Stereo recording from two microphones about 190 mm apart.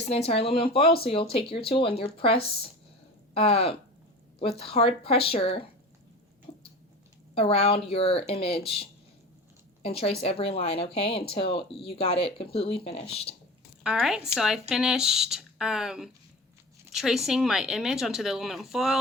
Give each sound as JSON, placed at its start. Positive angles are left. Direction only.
{"t": 0.0, "sound": "speech", "side_deg": 30}
{"t": 7.3, "sound": "speech", "side_deg": 30}
{"t": 13.8, "sound": "speech", "side_deg": 0}